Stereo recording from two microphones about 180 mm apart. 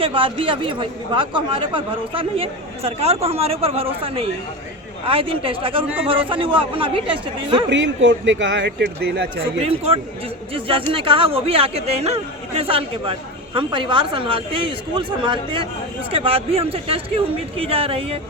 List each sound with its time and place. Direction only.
0.0 s speech: 30° right (ahead or behind)
7.7 s speech: 85° right; by 9.2 s 70° right (ahead or behind)
9.6 s speech: 35° right (ahead or behind)